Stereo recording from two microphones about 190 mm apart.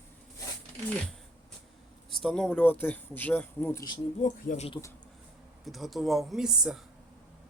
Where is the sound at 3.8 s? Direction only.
40° left (ahead or behind).